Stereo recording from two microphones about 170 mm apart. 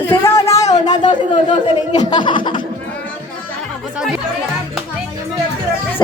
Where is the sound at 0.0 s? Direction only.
15° left (ahead or behind).